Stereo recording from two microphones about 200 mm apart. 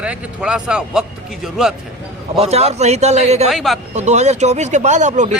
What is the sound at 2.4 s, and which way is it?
Speech, 30° right (ahead or behind).